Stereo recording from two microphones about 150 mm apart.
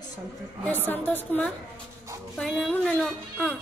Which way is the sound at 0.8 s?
10° left (ahead or behind).